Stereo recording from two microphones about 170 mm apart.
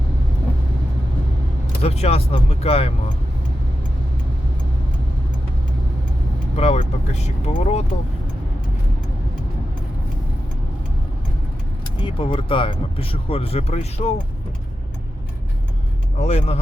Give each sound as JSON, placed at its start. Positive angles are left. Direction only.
{"t": 1.8, "sound": "speech", "side_deg": 35}
{"t": 6.6, "sound": "speech", "side_deg": 40}
{"t": 12.0, "sound": "speech", "side_deg": 30}
{"t": 16.1, "sound": "speech", "side_deg": 40}